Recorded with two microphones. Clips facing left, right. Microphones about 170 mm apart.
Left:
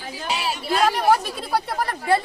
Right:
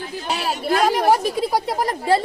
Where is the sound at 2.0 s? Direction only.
30° right (ahead or behind).